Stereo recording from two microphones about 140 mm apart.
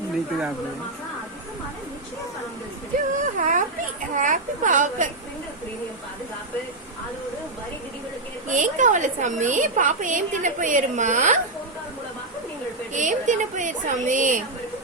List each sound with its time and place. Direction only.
3.2 s a woman's voice: 70° right (ahead or behind)
8.4 s a woman's voice: 65° right (ahead or behind)
12.9 s a woman's voice: 60° right (ahead or behind)